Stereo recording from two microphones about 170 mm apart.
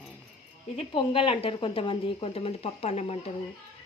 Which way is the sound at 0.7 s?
30° left (ahead or behind).